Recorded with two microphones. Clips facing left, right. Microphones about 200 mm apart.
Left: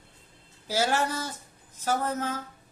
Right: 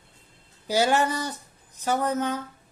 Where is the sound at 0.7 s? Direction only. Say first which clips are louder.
Right 4 dB; centre (ahead or behind).